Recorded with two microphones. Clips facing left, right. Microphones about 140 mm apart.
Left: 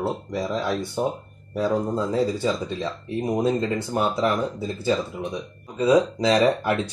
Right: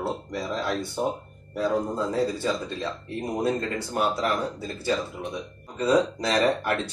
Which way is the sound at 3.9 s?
20° left (ahead or behind).